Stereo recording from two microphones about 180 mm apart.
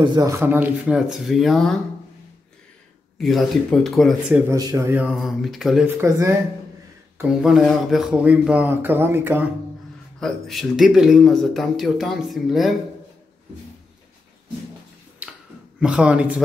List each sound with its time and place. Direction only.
0.0 s speech: 20° right (ahead or behind); by 1.8 s centre (ahead or behind)
3.2 s speech: centre (ahead or behind)
4.5 s speech: 20° right (ahead or behind)
5.1 s speech: centre (ahead or behind)
5.9 s speech: 15° right (ahead or behind)
7.2 s speech: centre (ahead or behind)
10.2 s speech: centre (ahead or behind)
15.8 s speech: 5° right (ahead or behind)